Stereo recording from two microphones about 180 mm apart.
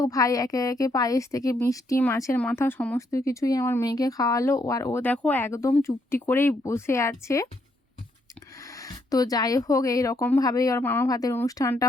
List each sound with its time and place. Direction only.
0.0 s speech: 20° left (ahead or behind)
8.7 s speech: 20° left (ahead or behind)